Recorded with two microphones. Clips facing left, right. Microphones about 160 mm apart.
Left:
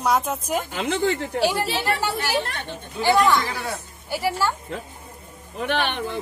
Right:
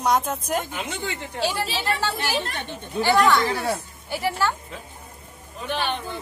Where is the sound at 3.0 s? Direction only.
15° left (ahead or behind).